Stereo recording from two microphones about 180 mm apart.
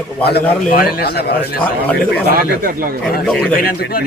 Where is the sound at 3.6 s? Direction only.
60° left (ahead or behind).